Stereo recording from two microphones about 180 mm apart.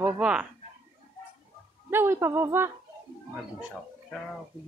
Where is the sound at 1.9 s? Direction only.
15° right (ahead or behind).